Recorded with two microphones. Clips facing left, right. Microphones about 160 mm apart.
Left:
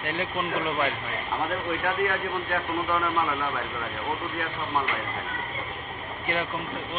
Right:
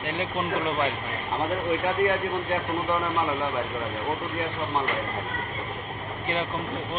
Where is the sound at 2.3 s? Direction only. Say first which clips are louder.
Right 1 dB; 20° right (ahead or behind).